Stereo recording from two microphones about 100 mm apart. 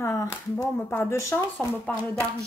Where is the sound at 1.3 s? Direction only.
15° left (ahead or behind).